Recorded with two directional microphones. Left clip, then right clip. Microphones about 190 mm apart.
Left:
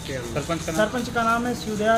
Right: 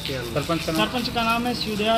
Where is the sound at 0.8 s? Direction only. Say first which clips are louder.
Left 5 dB; 10° left (ahead or behind).